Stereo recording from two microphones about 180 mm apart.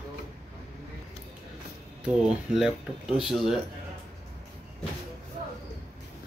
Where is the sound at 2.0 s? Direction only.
5° right (ahead or behind).